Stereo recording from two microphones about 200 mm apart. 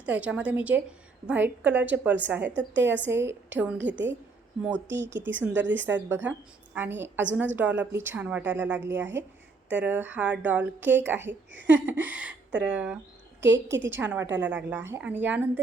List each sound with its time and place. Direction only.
0.0 s a woman's voice: 5° right (ahead or behind)
2.6 s a woman's voice: 65° right (ahead or behind)
3.1 s a woman's voice: 10° right (ahead or behind)
5.6 s a woman's voice: 65° right (ahead or behind)
5.9 s a woman's voice: 10° right (ahead or behind)
13.5 s a woman's voice: 65° right (ahead or behind)
13.9 s a woman's voice: 10° right (ahead or behind)